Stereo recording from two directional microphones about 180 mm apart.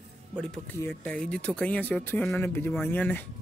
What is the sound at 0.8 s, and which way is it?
Speech, 10° left (ahead or behind).